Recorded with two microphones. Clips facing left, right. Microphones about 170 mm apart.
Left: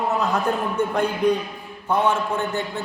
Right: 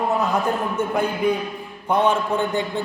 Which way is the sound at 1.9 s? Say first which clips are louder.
Right 2 dB; 15° right (ahead or behind).